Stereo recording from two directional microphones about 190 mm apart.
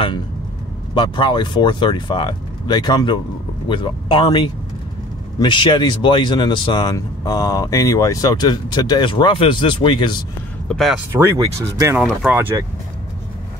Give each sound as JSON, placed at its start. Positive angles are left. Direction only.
{"t": 0.9, "sound": "speech", "side_deg": 25}
{"t": 10.7, "sound": "speech", "side_deg": 0}
{"t": 11.1, "sound": "speech", "side_deg": -15}